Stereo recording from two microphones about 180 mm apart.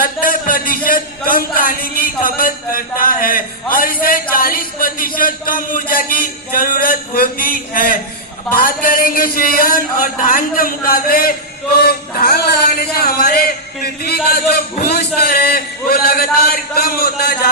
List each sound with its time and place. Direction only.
0.0 s a man's voice: 50° left (ahead or behind)